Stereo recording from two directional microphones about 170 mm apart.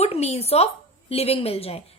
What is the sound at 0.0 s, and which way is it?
A woman's voice, 40° left (ahead or behind).